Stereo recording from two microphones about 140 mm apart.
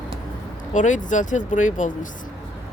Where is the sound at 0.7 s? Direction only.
60° left (ahead or behind).